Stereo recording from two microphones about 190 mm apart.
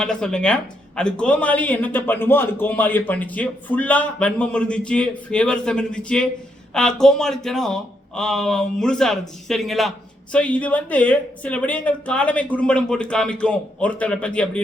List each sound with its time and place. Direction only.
0.0 s speech: 5° left (ahead or behind)